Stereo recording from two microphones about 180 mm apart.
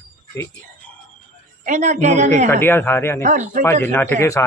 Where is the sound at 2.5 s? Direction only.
10° left (ahead or behind).